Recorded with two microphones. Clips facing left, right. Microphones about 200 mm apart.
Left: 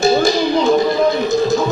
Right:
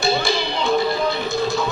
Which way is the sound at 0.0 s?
45° left (ahead or behind).